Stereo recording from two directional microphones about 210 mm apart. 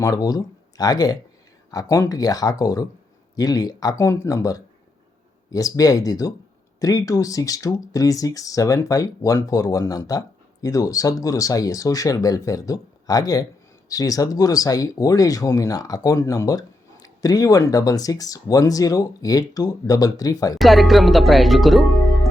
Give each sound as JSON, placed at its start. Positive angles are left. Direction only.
{"t": 0.0, "sound": "speech", "side_deg": 15}
{"t": 20.6, "sound": "speech", "side_deg": 0}